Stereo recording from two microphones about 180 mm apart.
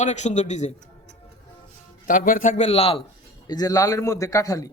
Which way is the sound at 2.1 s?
50° left (ahead or behind).